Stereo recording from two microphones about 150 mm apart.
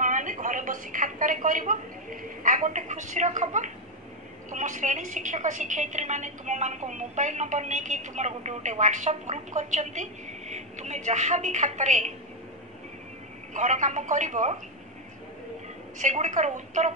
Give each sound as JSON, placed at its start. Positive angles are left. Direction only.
{"t": 0.0, "sound": "a woman's voice", "side_deg": -60}
{"t": 13.5, "sound": "a woman's voice", "side_deg": -55}
{"t": 16.0, "sound": "a woman's voice", "side_deg": -55}